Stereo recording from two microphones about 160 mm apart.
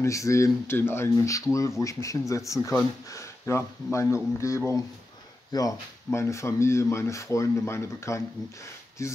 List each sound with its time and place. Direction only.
0.0 s speech: 20° left (ahead or behind)